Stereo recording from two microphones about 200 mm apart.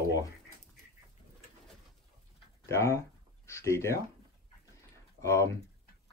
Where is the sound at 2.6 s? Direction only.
15° left (ahead or behind).